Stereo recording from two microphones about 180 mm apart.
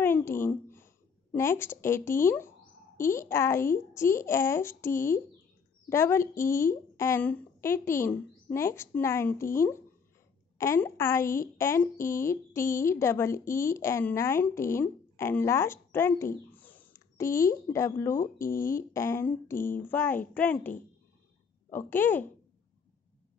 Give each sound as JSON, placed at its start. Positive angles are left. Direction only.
{"t": 0.0, "sound": "a sound", "side_deg": 10}
{"t": 1.3, "sound": "speech", "side_deg": 15}
{"t": 18.1, "sound": "speech", "side_deg": 50}
{"t": 18.9, "sound": "speech", "side_deg": 15}